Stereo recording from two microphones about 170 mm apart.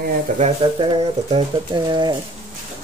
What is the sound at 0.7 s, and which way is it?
Speech, 30° right (ahead or behind).